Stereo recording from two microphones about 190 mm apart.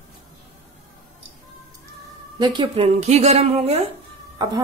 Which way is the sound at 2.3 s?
25° right (ahead or behind).